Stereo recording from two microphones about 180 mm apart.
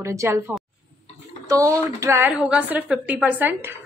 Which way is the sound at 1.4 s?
15° right (ahead or behind).